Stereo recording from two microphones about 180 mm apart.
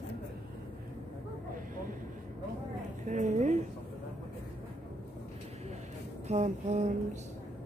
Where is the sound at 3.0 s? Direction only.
40° right (ahead or behind).